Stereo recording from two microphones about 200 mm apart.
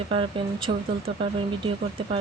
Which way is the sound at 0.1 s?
25° right (ahead or behind).